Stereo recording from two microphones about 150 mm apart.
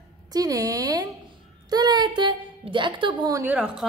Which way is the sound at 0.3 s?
25° right (ahead or behind).